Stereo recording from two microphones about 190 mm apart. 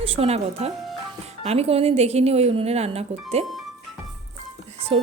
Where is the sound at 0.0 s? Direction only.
30° right (ahead or behind).